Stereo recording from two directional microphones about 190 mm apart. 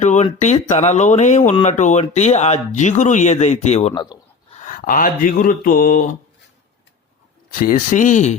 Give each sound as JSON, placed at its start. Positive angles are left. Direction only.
{"t": 0.0, "sound": "speech", "side_deg": 40}
{"t": 7.5, "sound": "speech", "side_deg": 45}